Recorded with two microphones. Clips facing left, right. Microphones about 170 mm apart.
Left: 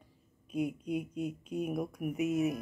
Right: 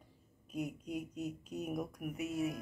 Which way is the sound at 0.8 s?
45° right (ahead or behind).